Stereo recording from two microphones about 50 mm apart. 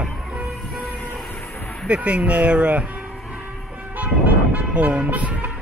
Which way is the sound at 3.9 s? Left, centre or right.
Right.